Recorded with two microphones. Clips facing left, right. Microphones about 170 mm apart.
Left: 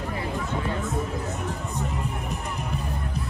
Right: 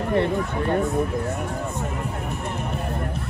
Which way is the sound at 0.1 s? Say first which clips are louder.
Right 9 dB; 65° right (ahead or behind).